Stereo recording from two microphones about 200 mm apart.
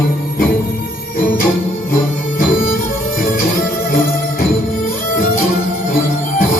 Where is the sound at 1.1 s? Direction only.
45° left (ahead or behind).